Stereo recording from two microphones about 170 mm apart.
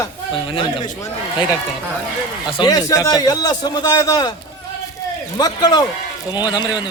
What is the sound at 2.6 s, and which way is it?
A man's voice, 20° left (ahead or behind).